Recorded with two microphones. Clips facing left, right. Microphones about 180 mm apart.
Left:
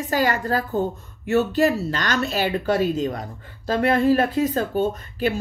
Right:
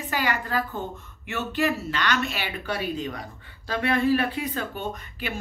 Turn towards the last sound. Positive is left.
turn(degrees=40)  # may be behind; listen again after turning